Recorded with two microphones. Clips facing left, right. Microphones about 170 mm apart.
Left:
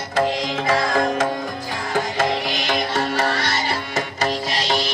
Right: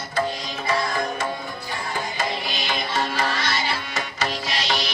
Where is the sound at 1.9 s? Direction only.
75° left (ahead or behind); by 3.5 s 60° left (ahead or behind).